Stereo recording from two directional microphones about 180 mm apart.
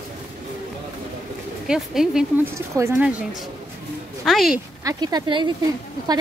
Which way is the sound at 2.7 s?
15° right (ahead or behind).